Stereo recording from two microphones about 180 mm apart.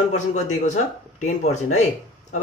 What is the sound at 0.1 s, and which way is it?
A man's voice, 40° left (ahead or behind).